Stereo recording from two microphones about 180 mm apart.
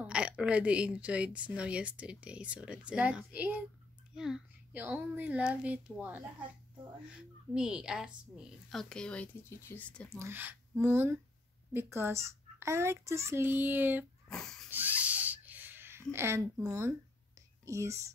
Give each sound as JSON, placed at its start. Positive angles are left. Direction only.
{"t": 0.0, "sound": "a woman's voice", "side_deg": -5}
{"t": 10.1, "sound": "a woman's voice", "side_deg": -15}
{"t": 14.3, "sound": "speech", "side_deg": 5}
{"t": 14.7, "sound": "a sound", "side_deg": -10}
{"t": 17.6, "sound": "a woman's voice", "side_deg": -15}